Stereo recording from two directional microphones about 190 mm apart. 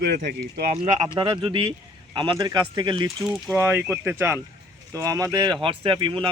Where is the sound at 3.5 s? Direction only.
10° right (ahead or behind).